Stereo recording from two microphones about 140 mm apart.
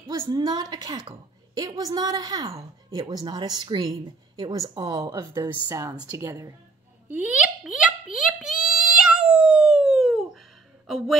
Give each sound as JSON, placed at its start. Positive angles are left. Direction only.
{"t": 0.1, "sound": "a woman's voice", "side_deg": -30}
{"t": 7.1, "sound": "plop", "side_deg": -10}
{"t": 8.6, "sound": "cat", "side_deg": -5}
{"t": 10.9, "sound": "a woman's voice", "side_deg": 0}